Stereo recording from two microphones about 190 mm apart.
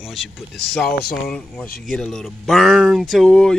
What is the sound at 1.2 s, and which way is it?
Speech, 5° left (ahead or behind).